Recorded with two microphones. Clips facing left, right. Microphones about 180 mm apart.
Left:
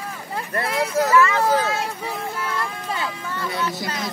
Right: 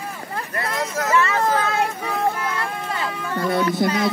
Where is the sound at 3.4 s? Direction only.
55° right (ahead or behind).